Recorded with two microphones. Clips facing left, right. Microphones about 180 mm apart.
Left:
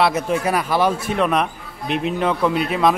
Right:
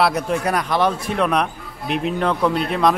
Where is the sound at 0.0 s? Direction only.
Centre (ahead or behind).